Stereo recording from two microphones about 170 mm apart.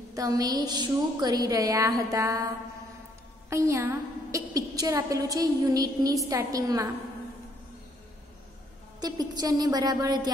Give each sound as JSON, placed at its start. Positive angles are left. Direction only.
{"t": 0.1, "sound": "a woman's voice", "side_deg": -20}
{"t": 9.0, "sound": "a woman's voice", "side_deg": -25}